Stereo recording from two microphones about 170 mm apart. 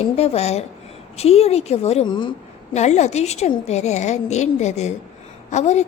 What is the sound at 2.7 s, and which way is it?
A woman's voice, 40° left (ahead or behind).